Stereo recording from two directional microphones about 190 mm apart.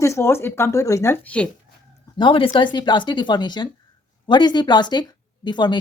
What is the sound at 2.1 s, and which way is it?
Speech, 25° left (ahead or behind).